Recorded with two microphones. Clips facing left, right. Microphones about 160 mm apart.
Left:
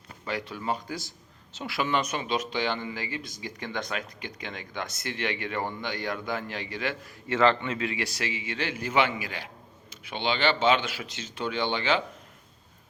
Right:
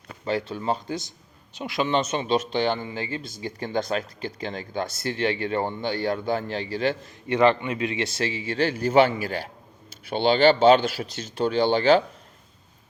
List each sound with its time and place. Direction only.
0.3 s speech: 30° right (ahead or behind)